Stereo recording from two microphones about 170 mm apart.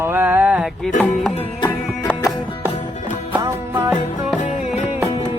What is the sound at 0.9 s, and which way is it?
Music, centre (ahead or behind).